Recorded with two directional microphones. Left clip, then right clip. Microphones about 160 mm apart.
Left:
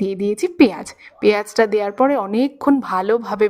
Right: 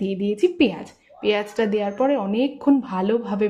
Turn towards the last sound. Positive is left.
turn(degrees=40)  # may be behind; listen again after turning